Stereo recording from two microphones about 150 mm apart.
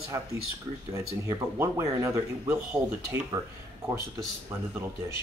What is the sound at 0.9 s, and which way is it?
Speech, 20° right (ahead or behind).